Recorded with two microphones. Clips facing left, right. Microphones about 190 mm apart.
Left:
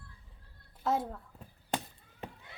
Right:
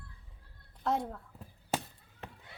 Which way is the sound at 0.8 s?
Centre (ahead or behind).